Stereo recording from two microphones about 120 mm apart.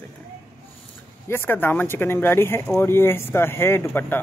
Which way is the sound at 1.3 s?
20° left (ahead or behind).